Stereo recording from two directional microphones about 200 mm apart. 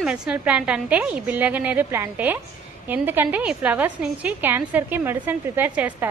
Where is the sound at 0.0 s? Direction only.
5° right (ahead or behind).